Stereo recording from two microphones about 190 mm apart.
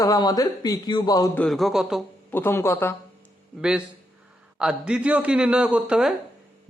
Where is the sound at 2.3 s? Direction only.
10° left (ahead or behind).